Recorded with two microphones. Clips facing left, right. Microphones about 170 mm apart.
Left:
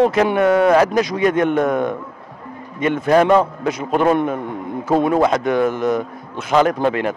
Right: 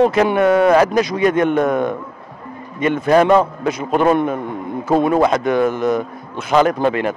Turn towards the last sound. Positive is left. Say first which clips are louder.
# right 1 dB
turn(degrees=-15)  # may be behind; listen again after turning